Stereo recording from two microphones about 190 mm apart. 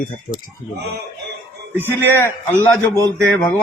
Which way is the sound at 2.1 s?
10° left (ahead or behind).